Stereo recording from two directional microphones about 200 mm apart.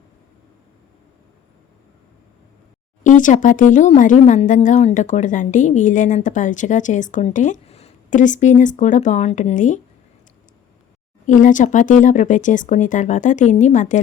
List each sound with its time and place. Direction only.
3.0 s speech: 40° left (ahead or behind)
11.3 s speech: 40° left (ahead or behind)